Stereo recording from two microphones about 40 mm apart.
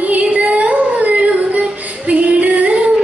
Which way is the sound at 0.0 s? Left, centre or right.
Right.